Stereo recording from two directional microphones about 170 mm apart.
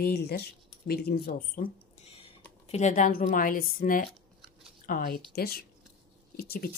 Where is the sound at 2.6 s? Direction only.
40° left (ahead or behind).